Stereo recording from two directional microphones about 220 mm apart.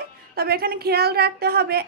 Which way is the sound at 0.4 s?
45° right (ahead or behind).